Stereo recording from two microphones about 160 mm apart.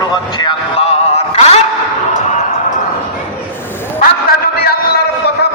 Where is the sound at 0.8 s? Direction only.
40° left (ahead or behind).